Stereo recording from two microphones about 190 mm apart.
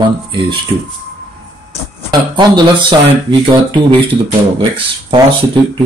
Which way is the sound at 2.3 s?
25° right (ahead or behind).